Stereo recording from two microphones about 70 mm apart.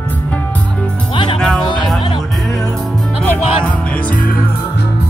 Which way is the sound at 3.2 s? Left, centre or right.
Left.